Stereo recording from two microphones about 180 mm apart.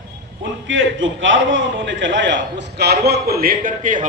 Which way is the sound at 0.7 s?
90° right.